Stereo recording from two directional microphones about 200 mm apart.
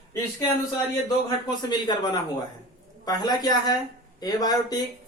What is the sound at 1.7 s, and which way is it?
Speech, 20° left (ahead or behind).